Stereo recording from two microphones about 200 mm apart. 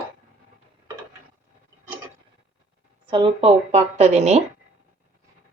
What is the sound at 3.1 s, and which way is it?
A woman's voice, 25° right (ahead or behind).